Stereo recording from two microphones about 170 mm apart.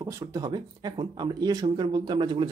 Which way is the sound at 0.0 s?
20° right (ahead or behind).